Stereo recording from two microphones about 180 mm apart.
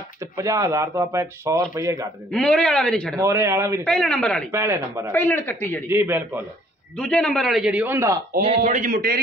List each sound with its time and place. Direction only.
0.2 s speech: 20° right (ahead or behind)
2.3 s a man's voice: 5° left (ahead or behind)
3.2 s speech: 15° right (ahead or behind)
3.8 s a man's voice: 5° left (ahead or behind)
4.5 s speech: 15° right (ahead or behind)
5.1 s speech: 10° left (ahead or behind)
5.9 s speech: 10° right (ahead or behind)
7.0 s a man's voice: 5° left (ahead or behind); by 8.2 s 15° right (ahead or behind)
8.6 s a man's voice: 45° right (ahead or behind)